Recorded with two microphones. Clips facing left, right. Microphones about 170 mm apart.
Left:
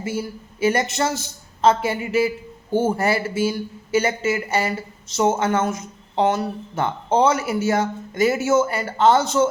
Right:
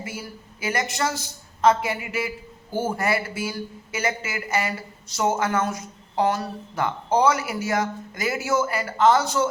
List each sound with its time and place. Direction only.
0.0 s a woman's voice: 25° left (ahead or behind)